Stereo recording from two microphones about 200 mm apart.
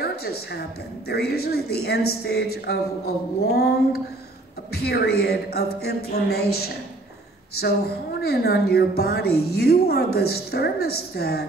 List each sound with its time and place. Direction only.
0.0 s a woman's voice: 50° left (ahead or behind)
8.2 s a woman's voice: 50° left (ahead or behind)